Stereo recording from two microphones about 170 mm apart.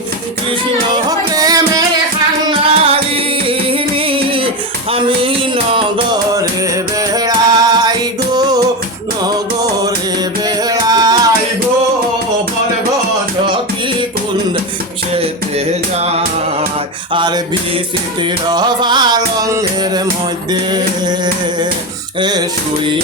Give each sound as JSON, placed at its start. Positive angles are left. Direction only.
{"t": 0.9, "sound": "music", "side_deg": -20}
{"t": 2.5, "sound": "music", "side_deg": -35}
{"t": 7.1, "sound": "music", "side_deg": -25}
{"t": 10.4, "sound": "music", "side_deg": -20}
{"t": 15.1, "sound": "music", "side_deg": -35}
{"t": 20.5, "sound": "a sound", "side_deg": -25}
{"t": 22.2, "sound": "music", "side_deg": -25}